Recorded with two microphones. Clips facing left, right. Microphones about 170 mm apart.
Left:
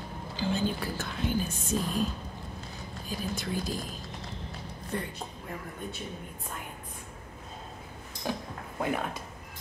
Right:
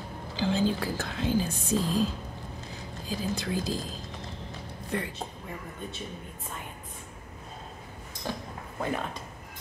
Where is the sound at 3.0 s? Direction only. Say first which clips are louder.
Right 3 dB; 90° right.